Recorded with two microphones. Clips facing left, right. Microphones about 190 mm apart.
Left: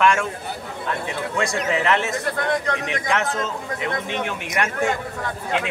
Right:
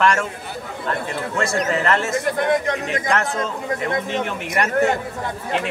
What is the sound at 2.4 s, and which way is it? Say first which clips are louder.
Speech: right 3 dB; 20° right (ahead or behind).